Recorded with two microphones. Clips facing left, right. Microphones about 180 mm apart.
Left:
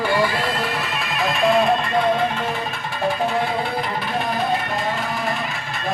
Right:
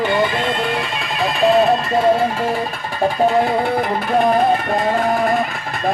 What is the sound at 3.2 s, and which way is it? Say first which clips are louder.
Music: right 6 dB; 40° right (ahead or behind).